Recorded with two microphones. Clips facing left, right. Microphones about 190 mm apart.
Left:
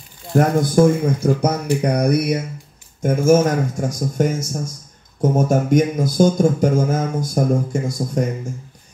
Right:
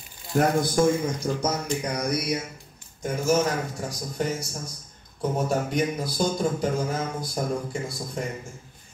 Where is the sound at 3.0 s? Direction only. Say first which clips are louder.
Left 9 dB; 50° left (ahead or behind).